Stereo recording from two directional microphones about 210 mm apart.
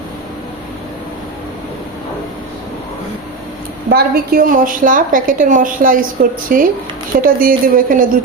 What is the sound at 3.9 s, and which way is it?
A woman's voice, 45° right (ahead or behind).